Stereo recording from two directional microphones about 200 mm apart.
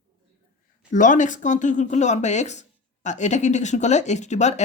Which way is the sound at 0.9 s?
40° left (ahead or behind).